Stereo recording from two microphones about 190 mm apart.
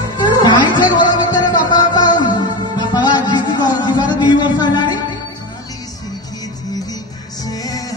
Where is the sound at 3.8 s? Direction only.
25° left (ahead or behind).